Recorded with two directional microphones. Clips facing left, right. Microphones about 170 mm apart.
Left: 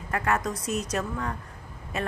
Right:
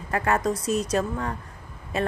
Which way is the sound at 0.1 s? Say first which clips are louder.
Right 4 dB; 30° right (ahead or behind).